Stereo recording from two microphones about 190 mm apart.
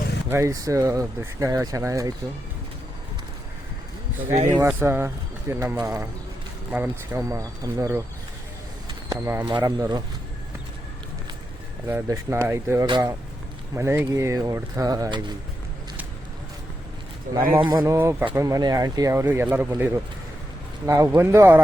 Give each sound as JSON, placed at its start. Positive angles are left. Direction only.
{"t": 0.3, "sound": "speech", "side_deg": -15}
{"t": 4.5, "sound": "speech", "side_deg": -15}
{"t": 11.9, "sound": "speech", "side_deg": -15}
{"t": 17.3, "sound": "speech", "side_deg": -50}
{"t": 17.6, "sound": "speech", "side_deg": -20}